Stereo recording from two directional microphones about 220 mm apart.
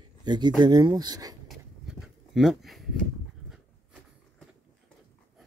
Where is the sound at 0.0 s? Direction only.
20° right (ahead or behind).